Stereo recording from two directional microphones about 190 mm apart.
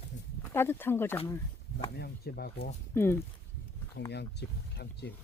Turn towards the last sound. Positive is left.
turn(degrees=60)  # may be behind; listen again after turning